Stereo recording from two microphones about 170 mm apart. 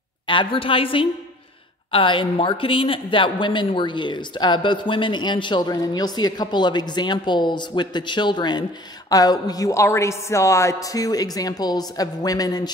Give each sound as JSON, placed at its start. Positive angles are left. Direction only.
{"t": 0.3, "sound": "a woman's voice", "side_deg": 30}